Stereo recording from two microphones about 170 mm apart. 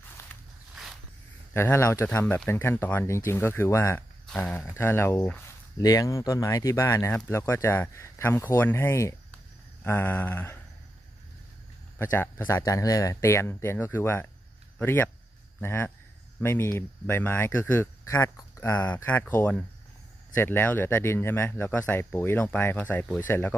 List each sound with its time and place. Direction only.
0.3 s a sound: 10° left (ahead or behind)
1.5 s speech: 15° left (ahead or behind)
12.0 s speech: 15° left (ahead or behind)